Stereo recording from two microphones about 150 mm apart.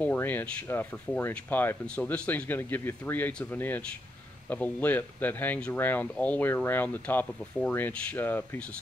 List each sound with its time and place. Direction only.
0.0 s speech: 10° left (ahead or behind)